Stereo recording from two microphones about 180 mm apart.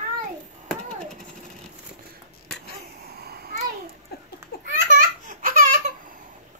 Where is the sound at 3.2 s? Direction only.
60° right (ahead or behind).